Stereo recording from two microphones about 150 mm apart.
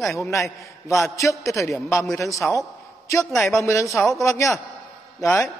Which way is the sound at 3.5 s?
20° left (ahead or behind).